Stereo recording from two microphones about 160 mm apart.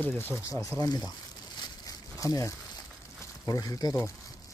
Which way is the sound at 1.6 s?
25° left (ahead or behind).